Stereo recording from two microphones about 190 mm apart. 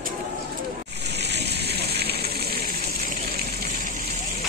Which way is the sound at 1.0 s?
60° right (ahead or behind).